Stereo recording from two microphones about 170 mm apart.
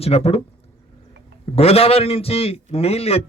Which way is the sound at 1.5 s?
35° left (ahead or behind).